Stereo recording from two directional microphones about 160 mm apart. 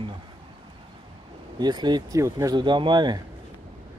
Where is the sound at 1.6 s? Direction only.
25° right (ahead or behind).